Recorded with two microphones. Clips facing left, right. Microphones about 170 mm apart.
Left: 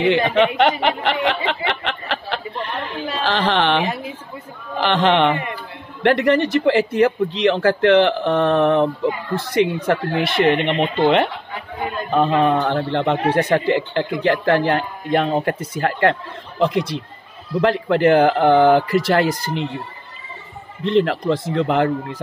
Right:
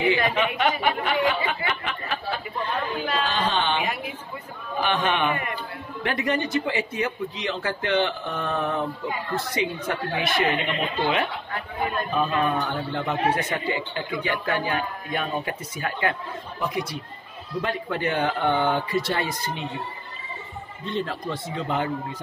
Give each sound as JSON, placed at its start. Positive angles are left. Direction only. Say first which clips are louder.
{"t": 0.3, "sound": "a man's voice", "louder": "left 8 dB", "side_deg": 70}
{"t": 1.7, "sound": "a sound", "louder": "left 5 dB", "side_deg": 75}
{"t": 3.3, "sound": "speech", "louder": "left 11 dB", "side_deg": 80}
{"t": 3.8, "sound": "a sound", "louder": "left 5 dB", "side_deg": 30}
{"t": 4.7, "sound": "a man's voice", "louder": "left 7 dB", "side_deg": 85}
{"t": 5.3, "sound": "speech", "louder": "left 5 dB", "side_deg": 25}
{"t": 6.0, "sound": "a man's voice", "louder": "left 10 dB", "side_deg": 75}
{"t": 12.1, "sound": "a man's voice", "louder": "left 10 dB", "side_deg": 85}
{"t": 14.2, "sound": "speech", "louder": "left 10 dB", "side_deg": 90}
{"t": 20.8, "sound": "speech", "louder": "left 12 dB", "side_deg": 90}